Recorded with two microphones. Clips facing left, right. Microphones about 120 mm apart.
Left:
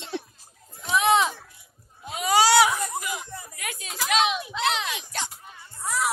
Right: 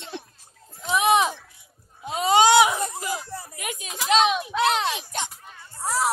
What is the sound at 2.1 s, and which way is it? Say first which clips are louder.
Baby cry: right 3 dB; 25° right (ahead or behind).